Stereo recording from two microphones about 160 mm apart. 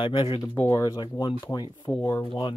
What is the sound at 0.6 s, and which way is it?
Speech, 20° left (ahead or behind).